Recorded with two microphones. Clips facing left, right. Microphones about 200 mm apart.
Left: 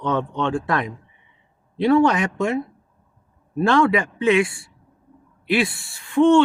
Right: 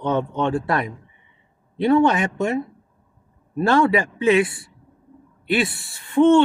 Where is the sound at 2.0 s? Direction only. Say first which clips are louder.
Even; centre (ahead or behind).